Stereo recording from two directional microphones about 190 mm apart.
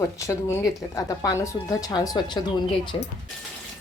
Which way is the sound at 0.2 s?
15° left (ahead or behind).